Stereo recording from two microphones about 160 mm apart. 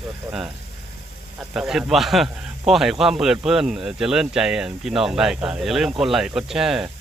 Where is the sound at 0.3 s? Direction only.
5° right (ahead or behind).